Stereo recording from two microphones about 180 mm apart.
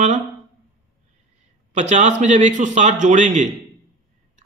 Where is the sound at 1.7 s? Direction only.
40° right (ahead or behind).